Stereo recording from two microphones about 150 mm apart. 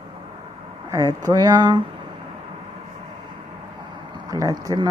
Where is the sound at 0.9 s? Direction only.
20° right (ahead or behind).